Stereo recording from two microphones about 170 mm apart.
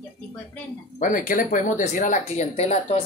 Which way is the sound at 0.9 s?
50° left (ahead or behind).